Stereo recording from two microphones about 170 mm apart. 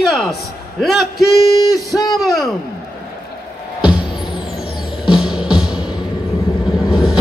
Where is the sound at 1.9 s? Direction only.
25° left (ahead or behind).